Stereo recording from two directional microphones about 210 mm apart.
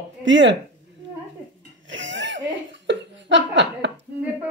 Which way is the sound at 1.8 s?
60° right (ahead or behind).